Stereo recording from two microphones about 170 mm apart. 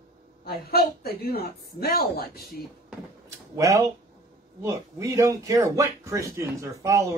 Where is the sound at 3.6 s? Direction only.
20° right (ahead or behind).